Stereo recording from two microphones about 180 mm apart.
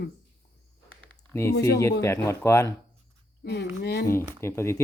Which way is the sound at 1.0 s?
15° left (ahead or behind).